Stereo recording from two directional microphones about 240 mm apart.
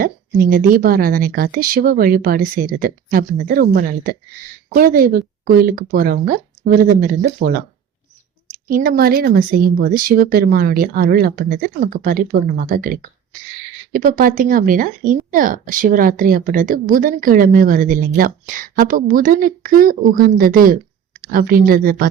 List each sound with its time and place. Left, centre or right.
0.0 s speech: right
8.7 s speech: right